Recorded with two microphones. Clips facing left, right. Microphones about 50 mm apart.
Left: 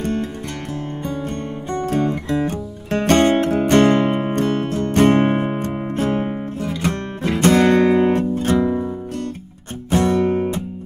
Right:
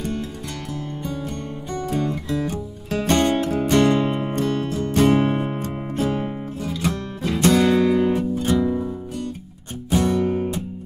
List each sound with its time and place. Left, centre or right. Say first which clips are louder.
1.7 s music: left 4 dB; left
7.3 s music: left 3 dB; left
8.5 s music: left 3 dB; left
9.8 s music: left 3 dB; left